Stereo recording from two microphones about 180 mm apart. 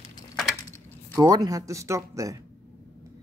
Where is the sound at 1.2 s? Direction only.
20° right (ahead or behind).